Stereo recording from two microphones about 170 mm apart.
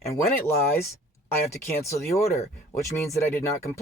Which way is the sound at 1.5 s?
15° left (ahead or behind).